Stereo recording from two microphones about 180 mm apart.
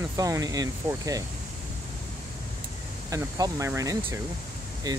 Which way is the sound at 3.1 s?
20° right (ahead or behind).